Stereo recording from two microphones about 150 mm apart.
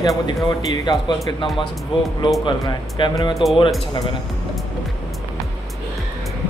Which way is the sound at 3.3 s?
Centre (ahead or behind).